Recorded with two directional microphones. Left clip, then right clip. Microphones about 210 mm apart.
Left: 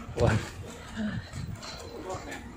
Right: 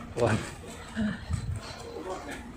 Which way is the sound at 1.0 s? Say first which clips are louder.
Right 3 dB; 15° right (ahead or behind).